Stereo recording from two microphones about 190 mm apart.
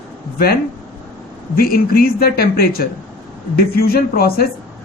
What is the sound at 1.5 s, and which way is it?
Speech, 50° left (ahead or behind).